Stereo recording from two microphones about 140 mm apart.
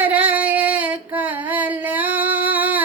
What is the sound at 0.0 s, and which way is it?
Singing, 10° right (ahead or behind).